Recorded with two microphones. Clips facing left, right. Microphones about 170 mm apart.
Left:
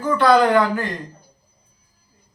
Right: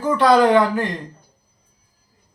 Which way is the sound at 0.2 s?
20° right (ahead or behind).